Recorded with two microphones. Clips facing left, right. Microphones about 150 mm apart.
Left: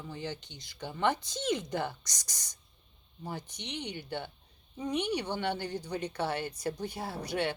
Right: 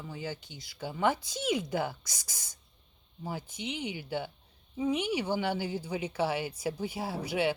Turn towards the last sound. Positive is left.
turn(degrees=-5)  # may be behind; listen again after turning